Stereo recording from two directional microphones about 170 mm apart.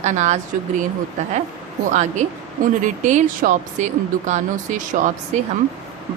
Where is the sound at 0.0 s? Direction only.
40° right (ahead or behind).